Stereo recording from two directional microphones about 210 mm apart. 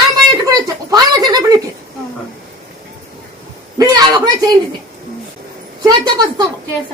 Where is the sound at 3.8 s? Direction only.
20° right (ahead or behind).